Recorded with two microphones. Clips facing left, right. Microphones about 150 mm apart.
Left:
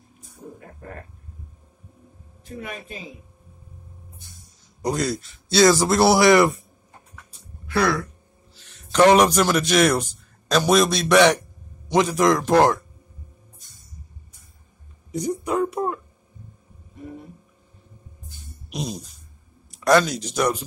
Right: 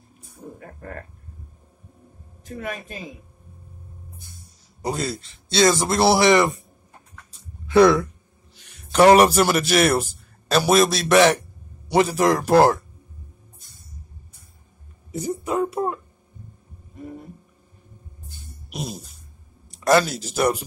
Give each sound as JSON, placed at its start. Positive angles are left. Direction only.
{"t": 2.4, "sound": "speech", "side_deg": -45}
{"t": 4.8, "sound": "speech", "side_deg": -5}
{"t": 7.6, "sound": "speech", "side_deg": -20}
{"t": 15.0, "sound": "speech", "side_deg": -5}
{"t": 18.7, "sound": "a sound", "side_deg": -5}
{"t": 20.1, "sound": "speech", "side_deg": -5}